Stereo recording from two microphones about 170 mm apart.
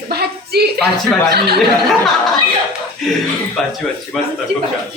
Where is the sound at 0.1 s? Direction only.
70° right (ahead or behind).